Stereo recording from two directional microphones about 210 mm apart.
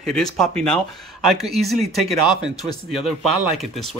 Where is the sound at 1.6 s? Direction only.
Centre (ahead or behind).